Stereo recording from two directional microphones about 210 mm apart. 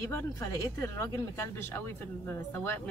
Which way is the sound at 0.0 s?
15° left (ahead or behind).